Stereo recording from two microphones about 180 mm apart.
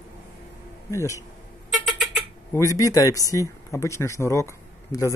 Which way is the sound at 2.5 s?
15° left (ahead or behind).